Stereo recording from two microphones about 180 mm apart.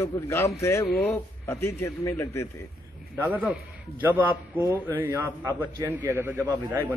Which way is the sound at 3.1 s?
10° right (ahead or behind).